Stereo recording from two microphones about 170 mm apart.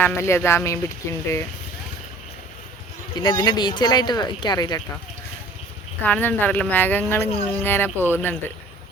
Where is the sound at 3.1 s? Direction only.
25° left (ahead or behind).